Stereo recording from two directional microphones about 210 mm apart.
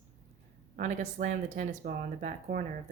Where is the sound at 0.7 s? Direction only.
35° right (ahead or behind).